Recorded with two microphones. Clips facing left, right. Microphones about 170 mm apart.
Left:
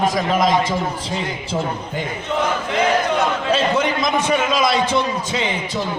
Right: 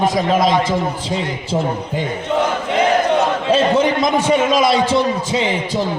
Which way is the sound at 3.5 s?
30° right (ahead or behind).